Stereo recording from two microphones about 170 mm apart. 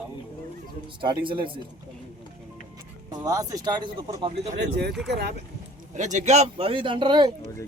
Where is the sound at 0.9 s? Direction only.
30° right (ahead or behind).